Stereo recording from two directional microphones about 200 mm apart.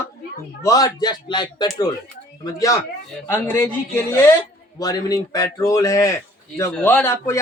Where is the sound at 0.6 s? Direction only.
15° left (ahead or behind).